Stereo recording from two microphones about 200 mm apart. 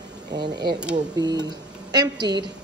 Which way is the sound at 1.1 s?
20° right (ahead or behind).